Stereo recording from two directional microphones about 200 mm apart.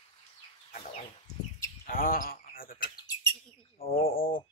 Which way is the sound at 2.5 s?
45° left (ahead or behind).